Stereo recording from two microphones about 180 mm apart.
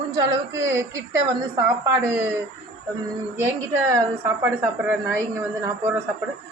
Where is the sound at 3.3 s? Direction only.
15° right (ahead or behind).